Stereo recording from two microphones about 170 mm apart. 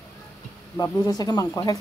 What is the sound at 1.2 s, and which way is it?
Speech, 20° left (ahead or behind).